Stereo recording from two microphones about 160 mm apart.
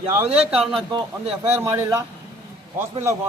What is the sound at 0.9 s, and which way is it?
Speech, 40° right (ahead or behind).